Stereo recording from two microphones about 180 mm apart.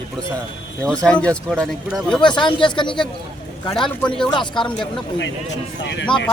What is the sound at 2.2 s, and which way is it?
Speech, 25° left (ahead or behind).